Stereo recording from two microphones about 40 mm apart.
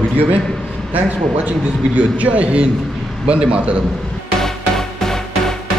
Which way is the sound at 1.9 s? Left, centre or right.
Right.